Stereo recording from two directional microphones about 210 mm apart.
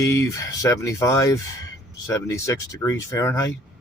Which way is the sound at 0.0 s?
15° left (ahead or behind).